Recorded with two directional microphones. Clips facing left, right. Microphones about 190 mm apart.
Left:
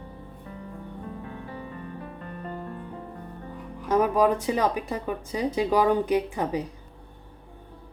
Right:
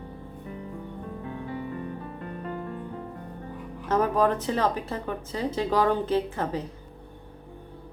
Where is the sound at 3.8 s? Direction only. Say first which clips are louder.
Left 2 dB; 10° left (ahead or behind).